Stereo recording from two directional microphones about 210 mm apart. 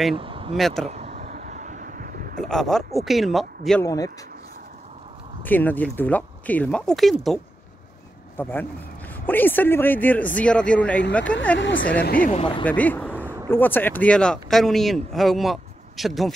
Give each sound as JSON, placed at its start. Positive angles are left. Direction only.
{"t": 0.1, "sound": "speech", "side_deg": -25}
{"t": 0.6, "sound": "speech", "side_deg": 0}
{"t": 0.8, "sound": "a sound", "side_deg": -30}
{"t": 2.4, "sound": "speech", "side_deg": 0}
{"t": 3.8, "sound": "speech", "side_deg": 15}
{"t": 5.4, "sound": "speech", "side_deg": 10}
{"t": 8.4, "sound": "speech", "side_deg": 10}
{"t": 11.5, "sound": "a woman's voice", "side_deg": 65}
{"t": 12.0, "sound": "speech", "side_deg": 40}
{"t": 12.4, "sound": "speech", "side_deg": 25}
{"t": 12.6, "sound": "speech", "side_deg": 5}